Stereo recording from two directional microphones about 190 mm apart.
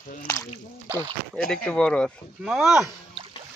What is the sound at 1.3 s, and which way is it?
Speech, 5° left (ahead or behind).